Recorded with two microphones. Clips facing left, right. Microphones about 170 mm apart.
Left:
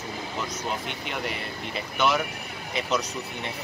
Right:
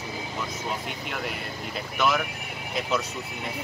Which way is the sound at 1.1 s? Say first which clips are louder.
Left 2 dB; centre (ahead or behind).